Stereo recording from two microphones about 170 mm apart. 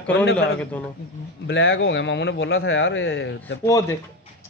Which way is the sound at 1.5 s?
90° left.